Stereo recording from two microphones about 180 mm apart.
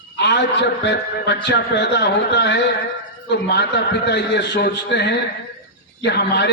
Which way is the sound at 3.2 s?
65° left (ahead or behind).